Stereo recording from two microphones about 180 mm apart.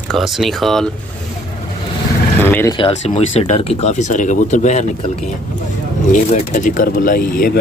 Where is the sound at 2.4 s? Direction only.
10° left (ahead or behind).